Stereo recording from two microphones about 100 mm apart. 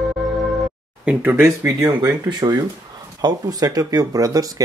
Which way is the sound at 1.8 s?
45° right (ahead or behind).